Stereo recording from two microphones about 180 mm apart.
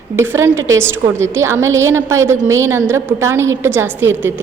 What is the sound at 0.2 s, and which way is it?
A woman's voice, 15° right (ahead or behind).